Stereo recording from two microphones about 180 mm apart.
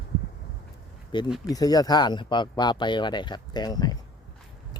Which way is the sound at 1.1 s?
25° left (ahead or behind).